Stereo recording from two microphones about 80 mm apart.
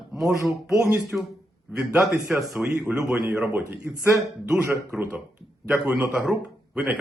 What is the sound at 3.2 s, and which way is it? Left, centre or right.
Speech, centre.